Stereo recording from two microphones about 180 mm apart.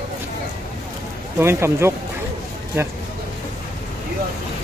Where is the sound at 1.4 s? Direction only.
15° right (ahead or behind).